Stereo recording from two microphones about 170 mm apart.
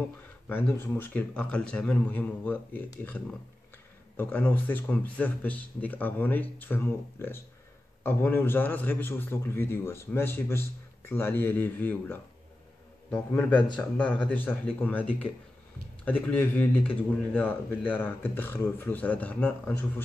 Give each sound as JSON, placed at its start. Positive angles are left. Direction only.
{"t": 0.5, "sound": "speech", "side_deg": 10}
{"t": 4.2, "sound": "speech", "side_deg": 10}